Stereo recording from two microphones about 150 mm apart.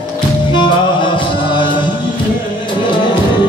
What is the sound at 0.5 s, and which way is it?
Music, 30° left (ahead or behind).